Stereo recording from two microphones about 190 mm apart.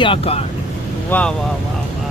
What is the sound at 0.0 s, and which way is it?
Speech, 30° left (ahead or behind).